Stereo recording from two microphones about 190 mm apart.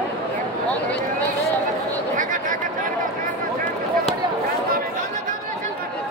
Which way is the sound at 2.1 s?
45° right (ahead or behind).